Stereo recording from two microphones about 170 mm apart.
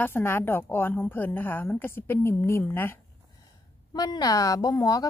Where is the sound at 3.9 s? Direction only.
25° left (ahead or behind).